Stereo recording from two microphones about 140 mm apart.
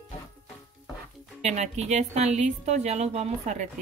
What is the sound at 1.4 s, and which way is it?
A woman's voice, 55° right (ahead or behind).